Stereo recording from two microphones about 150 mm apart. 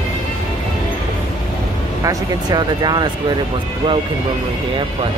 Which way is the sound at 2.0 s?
25° right (ahead or behind).